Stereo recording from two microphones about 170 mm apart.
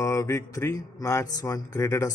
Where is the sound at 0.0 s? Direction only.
15° left (ahead or behind).